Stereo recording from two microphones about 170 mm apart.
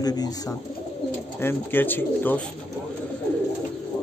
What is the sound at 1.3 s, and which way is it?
A man's voice, 10° left (ahead or behind).